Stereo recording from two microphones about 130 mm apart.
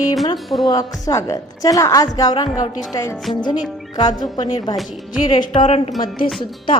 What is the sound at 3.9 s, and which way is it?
Speech, 35° left (ahead or behind).